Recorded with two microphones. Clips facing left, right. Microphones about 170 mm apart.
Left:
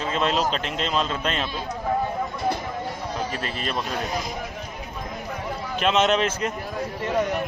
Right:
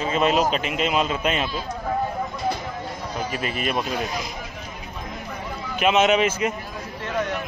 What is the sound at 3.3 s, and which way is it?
Speech, 5° right (ahead or behind).